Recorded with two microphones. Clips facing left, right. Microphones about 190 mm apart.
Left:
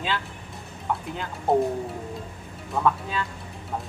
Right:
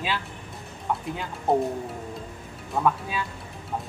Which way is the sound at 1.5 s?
Centre (ahead or behind).